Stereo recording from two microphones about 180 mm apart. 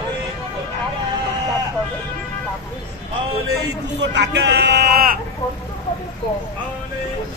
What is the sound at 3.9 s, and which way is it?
Speech, 75° right (ahead or behind).